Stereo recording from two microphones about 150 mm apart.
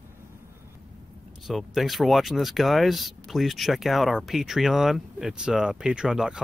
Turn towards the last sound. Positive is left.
turn(degrees=-5)  # may be behind; listen again after turning